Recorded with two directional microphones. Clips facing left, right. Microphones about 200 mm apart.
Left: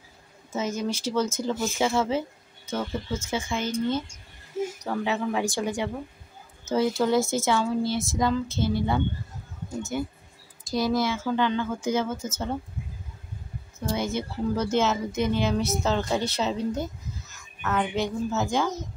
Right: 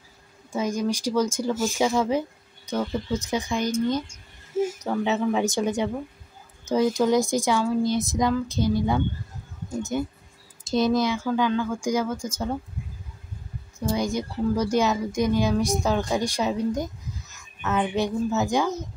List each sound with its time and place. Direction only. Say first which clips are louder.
0.5 s speech: right 3 dB; 15° right (ahead or behind)
5.0 s speech: right 4 dB; 20° right (ahead or behind)
13.8 s speech: right 3 dB; 15° right (ahead or behind)